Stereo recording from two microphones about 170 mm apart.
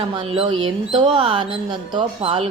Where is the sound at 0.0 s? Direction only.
30° right (ahead or behind).